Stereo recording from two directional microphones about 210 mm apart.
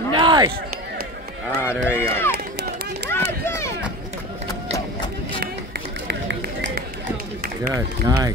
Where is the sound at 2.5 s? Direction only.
50° right (ahead or behind).